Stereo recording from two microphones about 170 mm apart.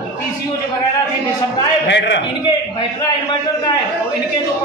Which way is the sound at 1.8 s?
90° left.